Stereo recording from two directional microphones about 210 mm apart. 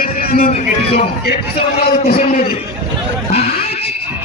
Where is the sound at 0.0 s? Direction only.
45° left (ahead or behind).